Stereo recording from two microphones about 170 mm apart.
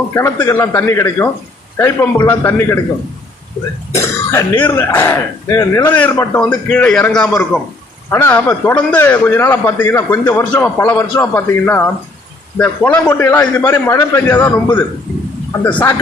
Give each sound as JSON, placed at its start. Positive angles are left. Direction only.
{"t": 0.1, "sound": "a man's voice", "side_deg": 15}
{"t": 3.9, "sound": "cough", "side_deg": 15}
{"t": 4.6, "sound": "a man's voice", "side_deg": 10}
{"t": 15.6, "sound": "a man's voice", "side_deg": 10}